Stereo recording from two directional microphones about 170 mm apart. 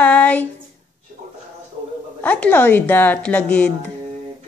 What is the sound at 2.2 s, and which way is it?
A woman's voice, 10° left (ahead or behind).